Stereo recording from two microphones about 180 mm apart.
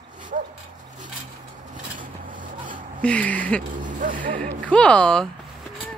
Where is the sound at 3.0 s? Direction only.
5° left (ahead or behind).